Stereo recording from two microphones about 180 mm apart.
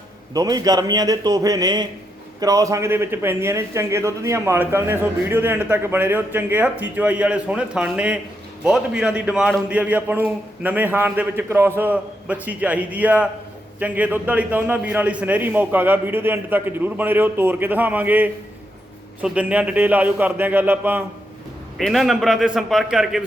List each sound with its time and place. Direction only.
0.3 s a man's voice: 20° right (ahead or behind); by 23.2 s centre (ahead or behind)